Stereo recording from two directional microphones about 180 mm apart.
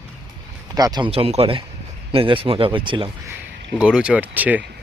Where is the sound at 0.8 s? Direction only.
20° right (ahead or behind).